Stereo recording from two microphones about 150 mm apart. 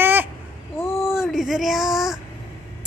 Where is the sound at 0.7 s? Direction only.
15° left (ahead or behind).